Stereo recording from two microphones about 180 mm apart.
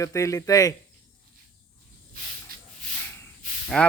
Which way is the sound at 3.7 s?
5° left (ahead or behind).